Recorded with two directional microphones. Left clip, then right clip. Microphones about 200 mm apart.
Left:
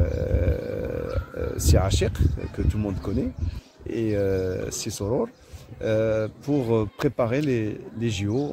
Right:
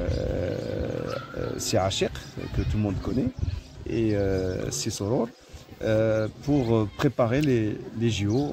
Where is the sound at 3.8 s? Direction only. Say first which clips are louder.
Left 1 dB; 15° left (ahead or behind).